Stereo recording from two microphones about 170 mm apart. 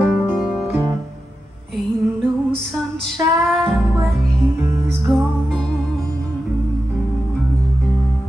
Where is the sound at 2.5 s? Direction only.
Centre (ahead or behind).